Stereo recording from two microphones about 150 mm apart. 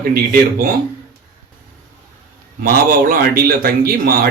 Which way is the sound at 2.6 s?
70° right (ahead or behind).